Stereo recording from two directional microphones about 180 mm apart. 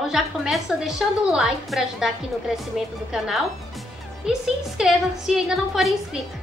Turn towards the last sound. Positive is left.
turn(degrees=0)  # may be behind; listen again after turning